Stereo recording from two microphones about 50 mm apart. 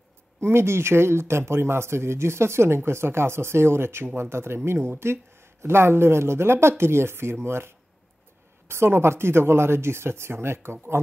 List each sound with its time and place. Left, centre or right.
0.4 s speech: right